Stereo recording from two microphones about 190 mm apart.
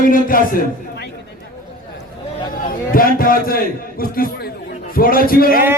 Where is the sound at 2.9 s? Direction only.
50° left (ahead or behind).